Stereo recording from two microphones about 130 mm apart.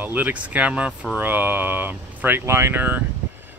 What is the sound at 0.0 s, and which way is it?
Speech, 15° right (ahead or behind).